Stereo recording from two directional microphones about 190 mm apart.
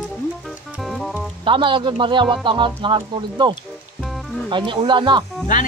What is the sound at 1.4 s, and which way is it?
Speech, 25° right (ahead or behind).